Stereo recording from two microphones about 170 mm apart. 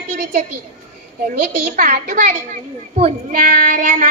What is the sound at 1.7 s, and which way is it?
Speech, 50° right (ahead or behind).